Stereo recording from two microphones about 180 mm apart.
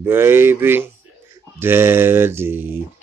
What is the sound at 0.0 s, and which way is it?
Speech, 10° right (ahead or behind).